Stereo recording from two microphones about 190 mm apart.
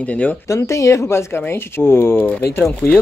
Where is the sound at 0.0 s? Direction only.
5° left (ahead or behind).